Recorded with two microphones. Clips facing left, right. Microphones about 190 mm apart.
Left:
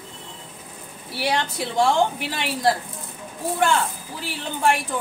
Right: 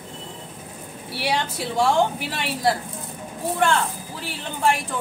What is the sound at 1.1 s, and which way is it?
A woman's voice, centre (ahead or behind).